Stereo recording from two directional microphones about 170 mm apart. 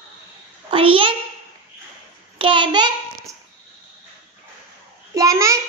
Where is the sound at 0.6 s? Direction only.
30° right (ahead or behind).